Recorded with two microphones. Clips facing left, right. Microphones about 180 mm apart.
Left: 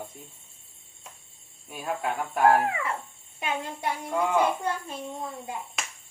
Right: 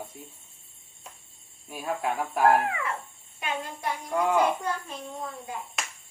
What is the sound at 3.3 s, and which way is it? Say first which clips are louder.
Speech: left 2 dB; 25° left (ahead or behind).